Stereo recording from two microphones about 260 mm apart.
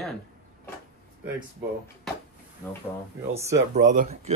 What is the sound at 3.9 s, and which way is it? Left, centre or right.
Speech, right.